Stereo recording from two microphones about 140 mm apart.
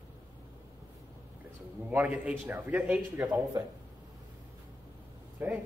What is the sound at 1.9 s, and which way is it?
A man's voice, 10° right (ahead or behind).